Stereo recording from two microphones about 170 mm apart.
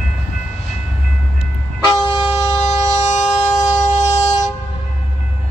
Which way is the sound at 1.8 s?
25° left (ahead or behind).